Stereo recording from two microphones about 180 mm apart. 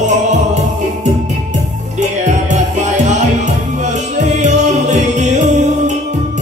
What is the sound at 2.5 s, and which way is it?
Music, 40° right (ahead or behind).